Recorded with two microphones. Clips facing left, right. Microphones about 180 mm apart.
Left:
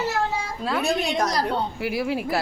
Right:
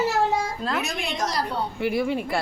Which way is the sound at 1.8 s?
5° left (ahead or behind).